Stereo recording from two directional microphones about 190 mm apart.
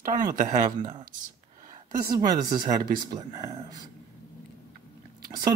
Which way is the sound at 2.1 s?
20° right (ahead or behind).